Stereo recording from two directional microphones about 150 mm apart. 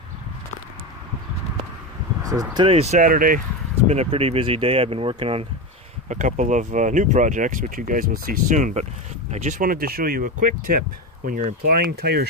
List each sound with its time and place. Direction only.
2.5 s speech: 35° right (ahead or behind)
3.0 s speech: 70° right (ahead or behind)
3.8 s speech: 45° right (ahead or behind)
6.0 s speech: 55° right (ahead or behind); by 10.3 s 75° right (ahead or behind)
11.2 s speech: 90° right